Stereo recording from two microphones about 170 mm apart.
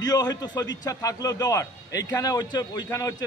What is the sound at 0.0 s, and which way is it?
A man's voice, 20° left (ahead or behind).